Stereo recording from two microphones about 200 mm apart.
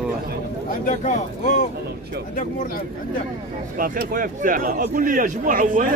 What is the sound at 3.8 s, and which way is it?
Speech, 45° right (ahead or behind).